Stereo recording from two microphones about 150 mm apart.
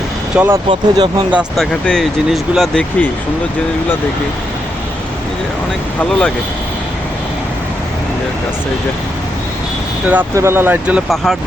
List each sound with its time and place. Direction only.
0.3 s speech: 15° right (ahead or behind)
0.7 s speech: 35° right (ahead or behind)
1.3 s speech: 5° right (ahead or behind)
6.0 s speech: 5° left (ahead or behind)
10.1 s speech: 15° right (ahead or behind)